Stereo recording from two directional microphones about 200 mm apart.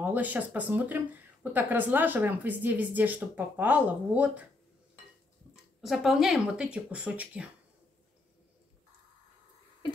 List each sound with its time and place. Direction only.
0.0 s speech: 10° right (ahead or behind)
5.8 s speech: centre (ahead or behind)